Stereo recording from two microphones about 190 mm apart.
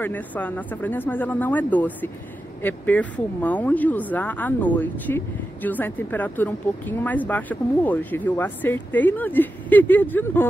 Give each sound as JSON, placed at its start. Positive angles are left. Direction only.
{"t": 0.0, "sound": "speech", "side_deg": 10}